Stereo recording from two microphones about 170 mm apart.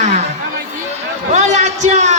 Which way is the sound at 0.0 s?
40° right (ahead or behind).